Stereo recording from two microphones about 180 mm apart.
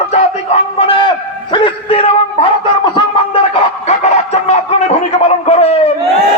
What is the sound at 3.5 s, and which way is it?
A man's voice, 35° left (ahead or behind).